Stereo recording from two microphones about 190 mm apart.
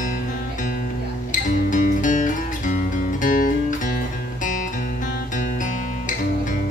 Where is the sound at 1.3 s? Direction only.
45° left (ahead or behind).